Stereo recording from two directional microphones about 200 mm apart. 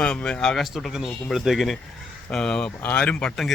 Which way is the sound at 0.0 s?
5° left (ahead or behind).